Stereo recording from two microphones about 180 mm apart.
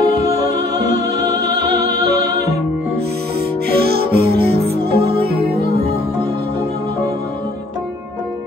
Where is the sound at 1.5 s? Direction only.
65° right (ahead or behind).